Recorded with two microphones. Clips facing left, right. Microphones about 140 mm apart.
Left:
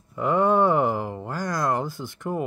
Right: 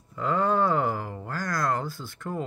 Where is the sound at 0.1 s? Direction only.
20° left (ahead or behind).